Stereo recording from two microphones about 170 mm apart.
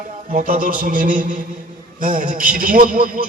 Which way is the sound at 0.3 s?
50° right (ahead or behind).